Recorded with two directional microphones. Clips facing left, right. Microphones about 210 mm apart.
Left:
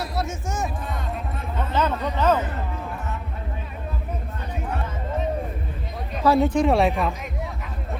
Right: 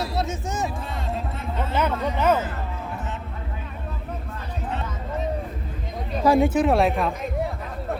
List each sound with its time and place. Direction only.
0.0 s music: 20° right (ahead or behind)
1.7 s a sound: 10° right (ahead or behind)
6.2 s speech: 10° right (ahead or behind)